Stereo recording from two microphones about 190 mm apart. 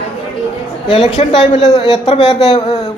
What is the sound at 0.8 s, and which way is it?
Speech, 30° left (ahead or behind).